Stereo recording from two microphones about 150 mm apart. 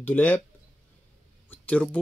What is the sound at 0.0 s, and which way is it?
Speech, 10° left (ahead or behind).